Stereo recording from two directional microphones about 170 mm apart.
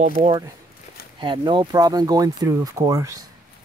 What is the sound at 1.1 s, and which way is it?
Speech, 25° right (ahead or behind).